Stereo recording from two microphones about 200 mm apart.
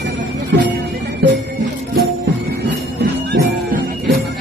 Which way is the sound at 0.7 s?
60° right (ahead or behind).